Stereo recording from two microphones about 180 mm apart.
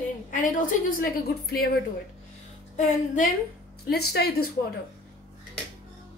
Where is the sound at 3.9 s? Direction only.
65° left (ahead or behind).